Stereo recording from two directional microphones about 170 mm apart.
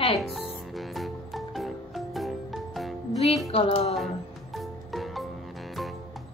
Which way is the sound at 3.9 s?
Centre (ahead or behind).